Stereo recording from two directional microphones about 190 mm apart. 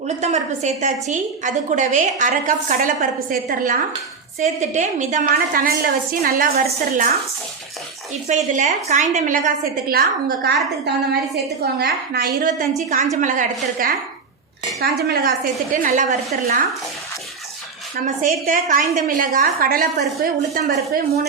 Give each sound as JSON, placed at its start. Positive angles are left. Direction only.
{"t": 0.2, "sound": "a woman's voice", "side_deg": -35}
{"t": 8.3, "sound": "a woman's voice", "side_deg": -40}
{"t": 9.9, "sound": "a woman's voice", "side_deg": -55}
{"t": 13.2, "sound": "a woman's voice", "side_deg": -45}
{"t": 14.8, "sound": "a woman's voice", "side_deg": -55}
{"t": 15.7, "sound": "a woman's voice", "side_deg": -45}
{"t": 17.9, "sound": "a woman's voice", "side_deg": -45}